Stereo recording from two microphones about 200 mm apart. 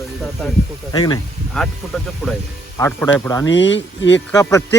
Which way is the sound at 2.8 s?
10° left (ahead or behind).